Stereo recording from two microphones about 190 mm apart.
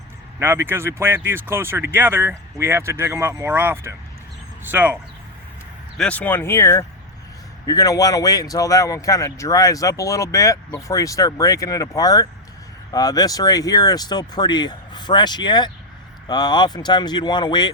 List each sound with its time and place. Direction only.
0.3 s speech: 10° right (ahead or behind)
6.0 s speech: 10° left (ahead or behind); by 17.7 s 25° left (ahead or behind)